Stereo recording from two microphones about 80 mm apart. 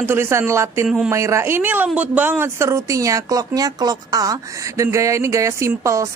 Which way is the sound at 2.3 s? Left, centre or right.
Right.